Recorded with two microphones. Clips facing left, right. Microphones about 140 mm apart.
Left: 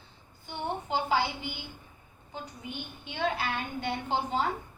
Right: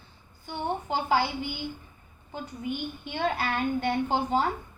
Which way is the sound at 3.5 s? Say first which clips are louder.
Right 7 dB; 45° right (ahead or behind).